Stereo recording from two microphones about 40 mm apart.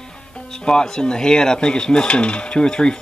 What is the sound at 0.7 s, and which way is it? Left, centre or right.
Speech, centre.